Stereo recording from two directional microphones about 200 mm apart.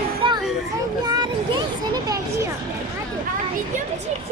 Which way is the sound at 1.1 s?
20° right (ahead or behind).